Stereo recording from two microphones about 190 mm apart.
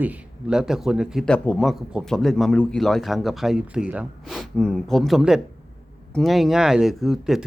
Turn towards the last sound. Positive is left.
turn(degrees=0)  # may be behind; listen again after turning